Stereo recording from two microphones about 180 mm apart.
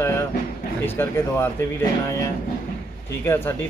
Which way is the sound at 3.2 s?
15° left (ahead or behind).